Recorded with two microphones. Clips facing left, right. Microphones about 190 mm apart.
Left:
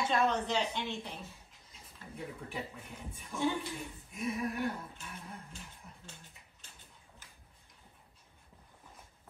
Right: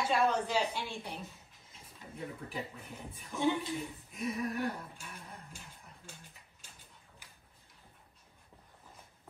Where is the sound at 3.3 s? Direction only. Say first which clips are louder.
Right 2 dB; 20° right (ahead or behind).